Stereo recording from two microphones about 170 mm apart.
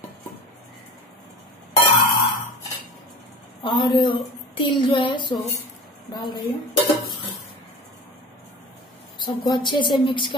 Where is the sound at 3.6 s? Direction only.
30° left (ahead or behind).